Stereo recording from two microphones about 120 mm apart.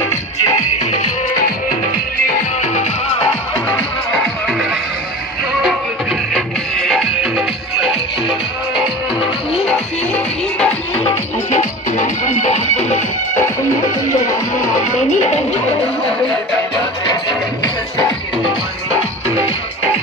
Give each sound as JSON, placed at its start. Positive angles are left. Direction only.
{"t": 2.6, "sound": "music", "side_deg": 80}
{"t": 3.6, "sound": "music", "side_deg": 10}
{"t": 6.3, "sound": "music", "side_deg": 5}
{"t": 9.7, "sound": "music", "side_deg": 10}
{"t": 11.1, "sound": "music", "side_deg": 85}
{"t": 14.8, "sound": "music", "side_deg": 90}
{"t": 17.0, "sound": "music", "side_deg": 35}